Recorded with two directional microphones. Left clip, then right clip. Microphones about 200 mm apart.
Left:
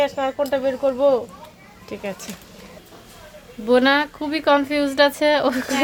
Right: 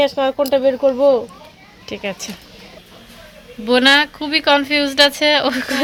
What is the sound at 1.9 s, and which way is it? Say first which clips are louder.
Speech: right 5 dB; 10° right (ahead or behind).